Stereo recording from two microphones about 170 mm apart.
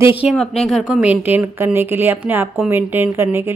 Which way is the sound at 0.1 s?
10° right (ahead or behind).